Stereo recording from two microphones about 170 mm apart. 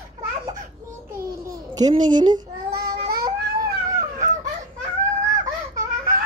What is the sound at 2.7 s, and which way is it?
Baby cry, 65° right (ahead or behind).